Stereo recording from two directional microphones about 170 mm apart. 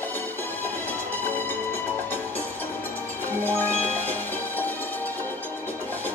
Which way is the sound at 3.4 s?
10° left (ahead or behind).